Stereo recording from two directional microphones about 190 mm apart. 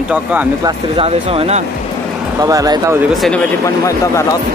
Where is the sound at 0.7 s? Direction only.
30° right (ahead or behind).